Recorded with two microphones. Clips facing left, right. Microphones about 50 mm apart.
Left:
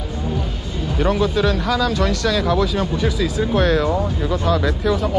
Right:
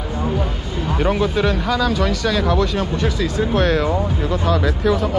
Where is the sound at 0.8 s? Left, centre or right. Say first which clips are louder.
Even; centre.